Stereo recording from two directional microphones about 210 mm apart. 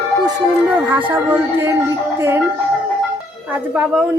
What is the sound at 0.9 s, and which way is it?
Speech, 10° right (ahead or behind).